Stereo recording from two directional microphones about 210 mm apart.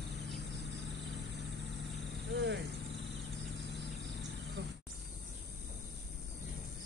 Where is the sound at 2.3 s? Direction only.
55° right (ahead or behind).